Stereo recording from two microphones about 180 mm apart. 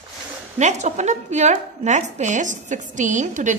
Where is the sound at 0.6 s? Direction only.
40° right (ahead or behind).